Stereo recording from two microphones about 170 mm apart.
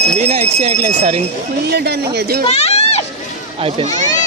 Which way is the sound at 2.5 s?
40° left (ahead or behind).